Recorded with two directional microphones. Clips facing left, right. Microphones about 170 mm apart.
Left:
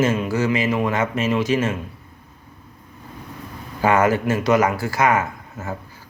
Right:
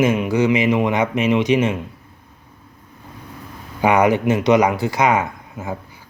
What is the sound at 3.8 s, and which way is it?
A man's voice, 15° right (ahead or behind).